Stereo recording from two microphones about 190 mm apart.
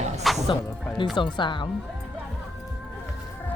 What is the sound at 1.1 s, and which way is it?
Speech, 25° left (ahead or behind).